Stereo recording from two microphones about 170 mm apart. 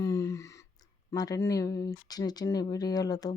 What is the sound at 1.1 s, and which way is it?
Speech, 20° left (ahead or behind).